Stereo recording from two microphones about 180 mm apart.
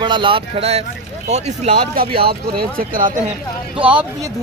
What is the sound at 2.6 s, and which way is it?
Speech, 50° right (ahead or behind).